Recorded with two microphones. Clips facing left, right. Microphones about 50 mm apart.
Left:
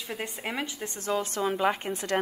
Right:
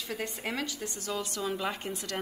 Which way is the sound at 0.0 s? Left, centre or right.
Left.